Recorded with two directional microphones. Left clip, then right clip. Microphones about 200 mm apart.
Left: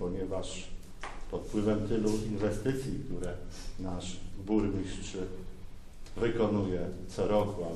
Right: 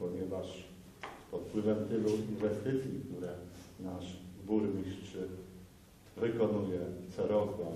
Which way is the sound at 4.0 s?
30° left (ahead or behind).